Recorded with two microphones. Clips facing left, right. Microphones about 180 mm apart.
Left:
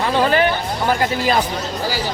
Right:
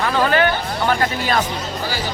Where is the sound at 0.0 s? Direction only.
30° left (ahead or behind).